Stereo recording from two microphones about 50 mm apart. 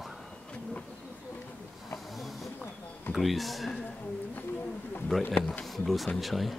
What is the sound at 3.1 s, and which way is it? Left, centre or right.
Speech, centre.